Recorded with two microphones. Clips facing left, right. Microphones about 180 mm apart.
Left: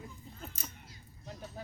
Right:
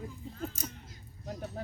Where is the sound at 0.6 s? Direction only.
40° right (ahead or behind).